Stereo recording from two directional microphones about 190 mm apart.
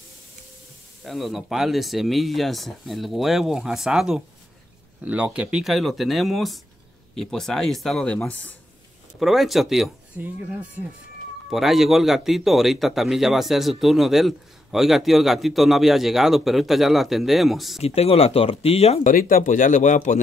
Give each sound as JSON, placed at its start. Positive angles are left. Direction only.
{"t": 1.0, "sound": "a man's voice", "side_deg": 0}
{"t": 17.8, "sound": "speech", "side_deg": 30}
{"t": 19.1, "sound": "speech", "side_deg": 45}